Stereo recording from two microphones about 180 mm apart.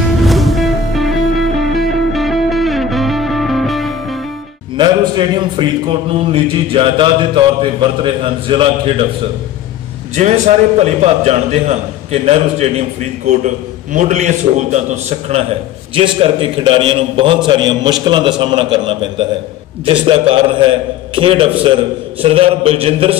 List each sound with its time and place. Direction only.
0.2 s music: centre (ahead or behind)
4.7 s a man's voice: 25° right (ahead or behind)
10.1 s a man's voice: 40° right (ahead or behind)